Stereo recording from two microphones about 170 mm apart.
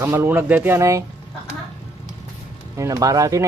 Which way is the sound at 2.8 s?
20° right (ahead or behind).